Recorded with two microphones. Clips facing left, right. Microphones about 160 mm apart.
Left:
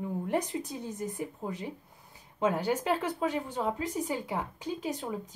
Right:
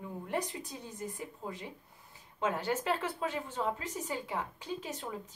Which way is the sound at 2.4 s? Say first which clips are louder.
Left 4 dB; 15° left (ahead or behind).